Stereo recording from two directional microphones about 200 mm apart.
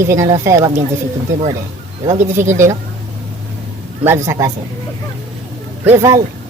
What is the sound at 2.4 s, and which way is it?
Speech, 10° right (ahead or behind).